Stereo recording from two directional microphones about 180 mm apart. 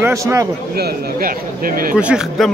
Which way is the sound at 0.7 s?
55° right (ahead or behind).